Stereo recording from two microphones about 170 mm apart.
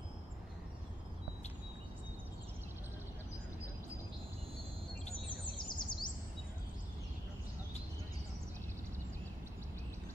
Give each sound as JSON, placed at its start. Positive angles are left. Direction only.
{"t": 5.7, "sound": "chirp", "side_deg": 25}